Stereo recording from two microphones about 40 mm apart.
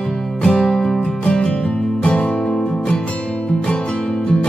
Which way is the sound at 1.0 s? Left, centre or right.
Left.